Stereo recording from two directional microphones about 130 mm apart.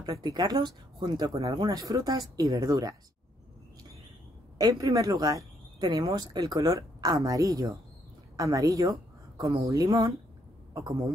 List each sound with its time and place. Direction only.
0.0 s speech: 30° right (ahead or behind)
4.6 s a man's voice: 25° right (ahead or behind)